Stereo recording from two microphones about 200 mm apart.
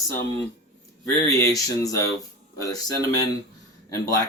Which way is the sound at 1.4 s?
15° left (ahead or behind).